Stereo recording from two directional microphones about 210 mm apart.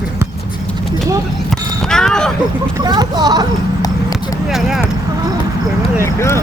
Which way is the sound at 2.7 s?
20° right (ahead or behind).